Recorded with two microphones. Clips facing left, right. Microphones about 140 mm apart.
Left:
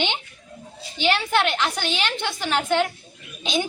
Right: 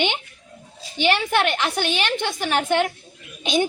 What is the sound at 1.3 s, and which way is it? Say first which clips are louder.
A woman's voice: right 1 dB; 50° right (ahead or behind).